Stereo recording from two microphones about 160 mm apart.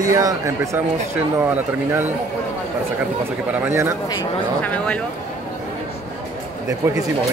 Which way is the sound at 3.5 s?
15° right (ahead or behind).